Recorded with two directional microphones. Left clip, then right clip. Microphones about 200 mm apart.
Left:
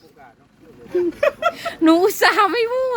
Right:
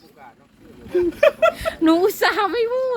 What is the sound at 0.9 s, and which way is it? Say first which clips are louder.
Speech: right 2 dB; 5° left (ahead or behind).